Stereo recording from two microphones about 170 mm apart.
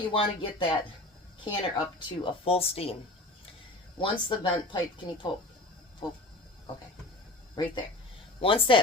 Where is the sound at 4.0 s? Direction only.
30° left (ahead or behind).